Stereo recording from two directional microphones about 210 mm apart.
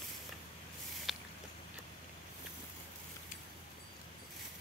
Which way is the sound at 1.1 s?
Centre (ahead or behind).